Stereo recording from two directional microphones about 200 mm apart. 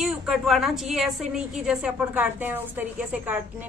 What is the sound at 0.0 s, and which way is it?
A woman's voice, centre (ahead or behind).